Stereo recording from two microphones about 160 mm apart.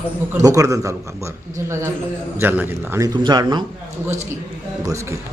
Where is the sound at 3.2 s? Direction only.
25° right (ahead or behind).